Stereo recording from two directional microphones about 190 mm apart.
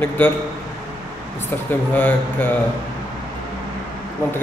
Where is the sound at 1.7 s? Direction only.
10° left (ahead or behind).